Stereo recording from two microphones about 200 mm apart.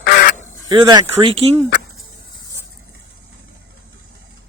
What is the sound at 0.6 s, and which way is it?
Speech, 20° right (ahead or behind).